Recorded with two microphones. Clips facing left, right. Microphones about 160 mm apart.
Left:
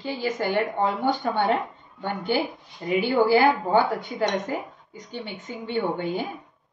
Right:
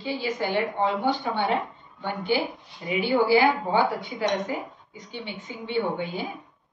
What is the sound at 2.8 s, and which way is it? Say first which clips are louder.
Speech: left 2 dB; 45° left (ahead or behind).